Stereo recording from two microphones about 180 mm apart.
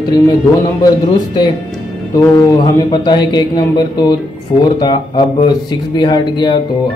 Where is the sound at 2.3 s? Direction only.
25° left (ahead or behind).